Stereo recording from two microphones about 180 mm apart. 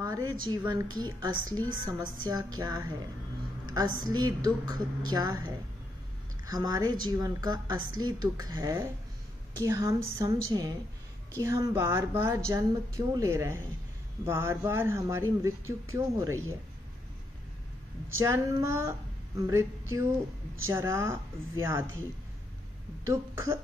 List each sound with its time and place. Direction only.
0.0 s a sound: 25° right (ahead or behind)
0.7 s a woman's voice: 20° right (ahead or behind)
18.2 s speech: 15° right (ahead or behind)
23.0 s speech: 15° right (ahead or behind)